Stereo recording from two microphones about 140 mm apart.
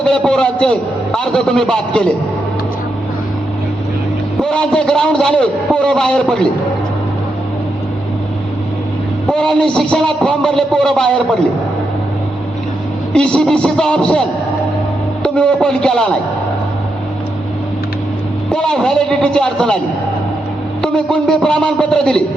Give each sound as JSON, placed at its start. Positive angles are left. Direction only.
{"t": 0.0, "sound": "a man's voice", "side_deg": 5}
{"t": 4.4, "sound": "a man's voice", "side_deg": 5}
{"t": 9.2, "sound": "a man's voice", "side_deg": 5}
{"t": 13.1, "sound": "a man's voice", "side_deg": 5}
{"t": 18.5, "sound": "a man's voice", "side_deg": 5}
{"t": 20.8, "sound": "a man's voice", "side_deg": 5}